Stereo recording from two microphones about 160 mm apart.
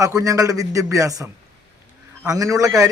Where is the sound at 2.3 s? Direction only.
20° right (ahead or behind).